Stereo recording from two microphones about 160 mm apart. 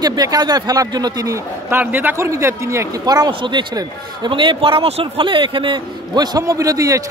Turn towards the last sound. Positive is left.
turn(degrees=-20)  # may be behind; listen again after turning